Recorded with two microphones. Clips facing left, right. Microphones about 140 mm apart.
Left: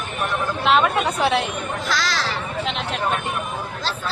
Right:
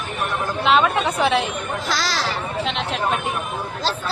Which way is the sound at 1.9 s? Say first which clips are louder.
Left 1 dB; 40° right (ahead or behind).